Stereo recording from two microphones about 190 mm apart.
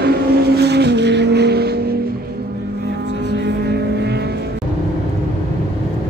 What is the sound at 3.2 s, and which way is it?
Music, 60° right (ahead or behind).